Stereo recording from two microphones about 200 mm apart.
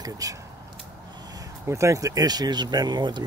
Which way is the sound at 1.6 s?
15° right (ahead or behind).